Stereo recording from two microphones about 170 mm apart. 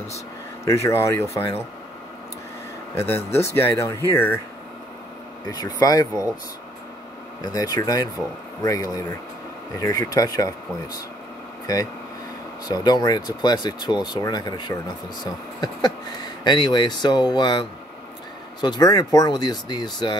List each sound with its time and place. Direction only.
0.7 s speech: 15° left (ahead or behind)
2.9 s speech: 15° left (ahead or behind)
5.8 s speech: 20° left (ahead or behind)
7.4 s speech: 20° left (ahead or behind)